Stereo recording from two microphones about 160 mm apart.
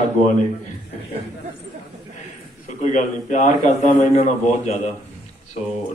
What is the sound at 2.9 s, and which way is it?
A man's voice, 50° left (ahead or behind).